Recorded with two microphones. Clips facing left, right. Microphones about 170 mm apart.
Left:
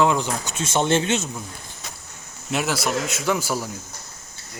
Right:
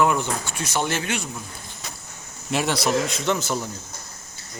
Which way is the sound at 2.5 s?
Centre (ahead or behind).